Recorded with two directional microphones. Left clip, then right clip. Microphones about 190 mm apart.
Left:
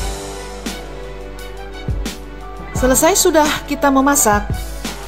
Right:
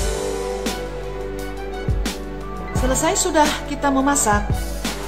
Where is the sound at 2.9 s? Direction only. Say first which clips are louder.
Left 7 dB; 30° left (ahead or behind).